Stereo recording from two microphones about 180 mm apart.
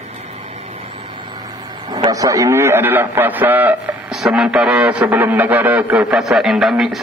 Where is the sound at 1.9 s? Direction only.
20° right (ahead or behind).